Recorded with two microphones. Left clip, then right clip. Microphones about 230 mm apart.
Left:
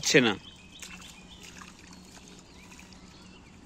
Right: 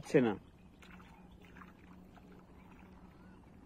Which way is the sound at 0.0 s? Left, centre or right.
Centre.